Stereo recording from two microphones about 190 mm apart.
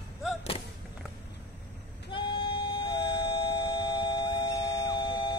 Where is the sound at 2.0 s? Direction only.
25° left (ahead or behind).